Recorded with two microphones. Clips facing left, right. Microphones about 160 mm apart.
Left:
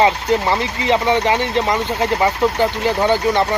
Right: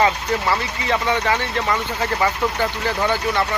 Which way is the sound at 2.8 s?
20° left (ahead or behind).